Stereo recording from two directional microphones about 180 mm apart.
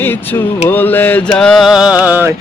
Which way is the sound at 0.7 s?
10° left (ahead or behind).